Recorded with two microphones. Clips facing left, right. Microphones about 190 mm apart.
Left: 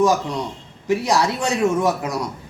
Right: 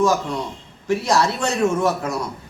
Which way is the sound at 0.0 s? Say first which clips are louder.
Left 1 dB; 15° left (ahead or behind).